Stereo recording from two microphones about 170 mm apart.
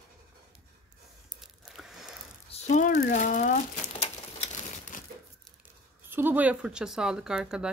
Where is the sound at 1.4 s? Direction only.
Centre (ahead or behind).